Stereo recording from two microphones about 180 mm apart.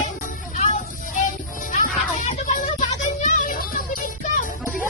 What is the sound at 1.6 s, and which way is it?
Music, 45° left (ahead or behind).